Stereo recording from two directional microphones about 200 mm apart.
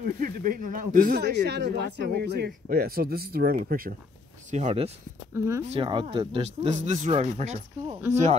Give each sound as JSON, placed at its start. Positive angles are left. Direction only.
{"t": 0.0, "sound": "speech", "side_deg": -45}
{"t": 4.5, "sound": "speech", "side_deg": -35}
{"t": 5.3, "sound": "speech", "side_deg": -15}
{"t": 5.7, "sound": "speech", "side_deg": -25}